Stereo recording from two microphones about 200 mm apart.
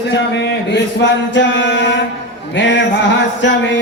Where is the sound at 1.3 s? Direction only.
65° left (ahead or behind).